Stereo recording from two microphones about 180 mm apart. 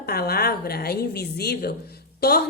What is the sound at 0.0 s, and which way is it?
A woman's voice, 60° left (ahead or behind).